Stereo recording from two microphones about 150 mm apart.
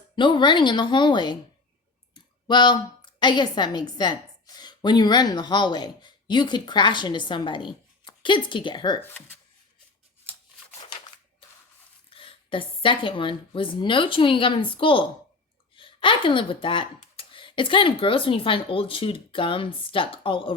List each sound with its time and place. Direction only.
0.2 s speech: 30° left (ahead or behind)
2.5 s a woman's voice: 30° left (ahead or behind)
12.1 s speech: 35° left (ahead or behind)